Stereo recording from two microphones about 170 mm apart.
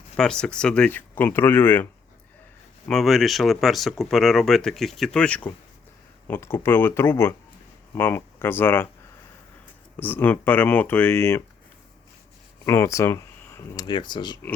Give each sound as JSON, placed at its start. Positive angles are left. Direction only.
{"t": 0.2, "sound": "speech", "side_deg": 5}
{"t": 2.8, "sound": "speech", "side_deg": 0}
{"t": 10.0, "sound": "speech", "side_deg": 10}
{"t": 12.6, "sound": "speech", "side_deg": 15}
{"t": 13.8, "sound": "speech", "side_deg": 25}